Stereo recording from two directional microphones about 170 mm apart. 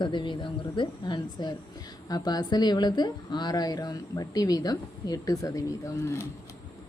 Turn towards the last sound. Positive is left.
turn(degrees=15)  # may be behind; listen again after turning